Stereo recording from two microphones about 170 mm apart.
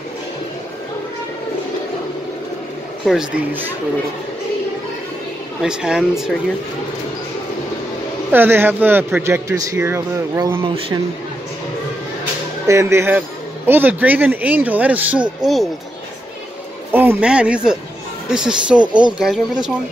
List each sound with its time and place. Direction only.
3.1 s speech: 5° right (ahead or behind)
5.6 s speech: 5° right (ahead or behind)
8.3 s speech: 10° right (ahead or behind)
12.6 s speech: 15° right (ahead or behind); by 15.7 s centre (ahead or behind)
16.9 s speech: 10° right (ahead or behind)